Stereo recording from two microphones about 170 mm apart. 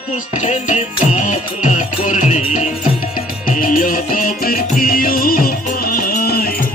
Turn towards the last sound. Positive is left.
turn(degrees=65)  # may be behind; listen again after turning